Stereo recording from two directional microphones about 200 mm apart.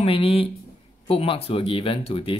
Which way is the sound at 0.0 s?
25° left (ahead or behind).